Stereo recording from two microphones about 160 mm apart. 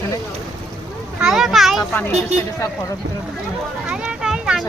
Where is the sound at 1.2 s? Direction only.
Centre (ahead or behind).